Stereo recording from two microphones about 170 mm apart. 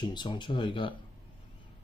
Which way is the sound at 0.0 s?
25° left (ahead or behind).